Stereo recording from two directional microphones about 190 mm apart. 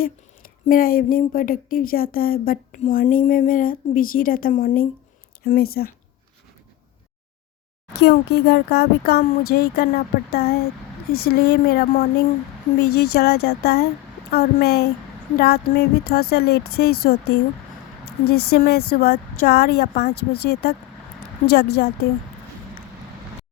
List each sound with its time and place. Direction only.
0.0 s speech: 50° left (ahead or behind)
7.9 s speech: 60° left (ahead or behind)